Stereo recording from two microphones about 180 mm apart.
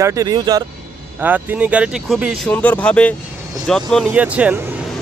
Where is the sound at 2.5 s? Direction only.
10° left (ahead or behind).